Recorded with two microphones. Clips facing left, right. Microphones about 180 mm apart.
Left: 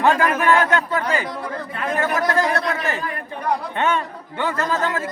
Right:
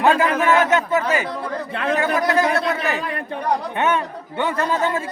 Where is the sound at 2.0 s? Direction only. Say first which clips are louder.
Even; 15° right (ahead or behind).